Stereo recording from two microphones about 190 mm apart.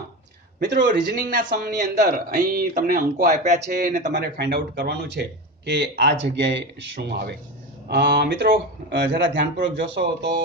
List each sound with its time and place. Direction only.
0.6 s speech: 65° right (ahead or behind)
1.5 s speech: 45° right (ahead or behind)
4.1 s speech: 60° right (ahead or behind)